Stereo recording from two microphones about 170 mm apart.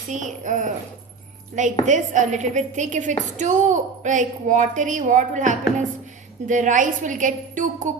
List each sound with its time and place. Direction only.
0.1 s a woman's voice: 45° right (ahead or behind)